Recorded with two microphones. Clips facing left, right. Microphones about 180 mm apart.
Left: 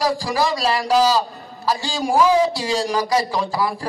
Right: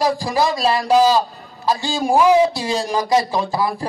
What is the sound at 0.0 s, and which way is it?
A man's voice, 20° right (ahead or behind).